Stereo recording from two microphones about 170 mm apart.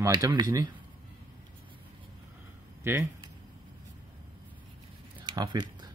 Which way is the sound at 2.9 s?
10° right (ahead or behind).